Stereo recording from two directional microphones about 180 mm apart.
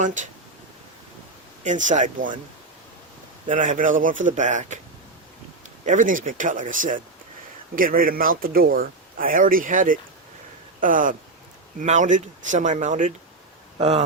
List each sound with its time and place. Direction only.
0.0 s speech: 45° right (ahead or behind)
1.6 s speech: 45° right (ahead or behind)
3.5 s speech: 45° right (ahead or behind)
5.8 s speech: 45° right (ahead or behind)